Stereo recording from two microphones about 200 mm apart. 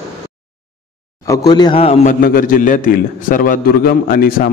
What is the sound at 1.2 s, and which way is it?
A man's voice, 20° left (ahead or behind).